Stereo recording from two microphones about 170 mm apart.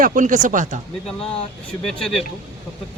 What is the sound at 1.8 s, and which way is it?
Speech, centre (ahead or behind).